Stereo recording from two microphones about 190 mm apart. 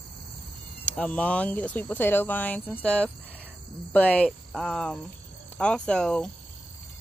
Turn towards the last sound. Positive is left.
turn(degrees=5)  # may be behind; listen again after turning